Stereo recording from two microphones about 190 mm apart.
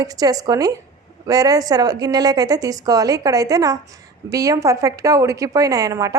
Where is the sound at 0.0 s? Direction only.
20° right (ahead or behind).